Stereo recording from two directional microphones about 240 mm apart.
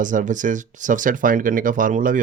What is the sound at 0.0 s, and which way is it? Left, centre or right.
Speech, right.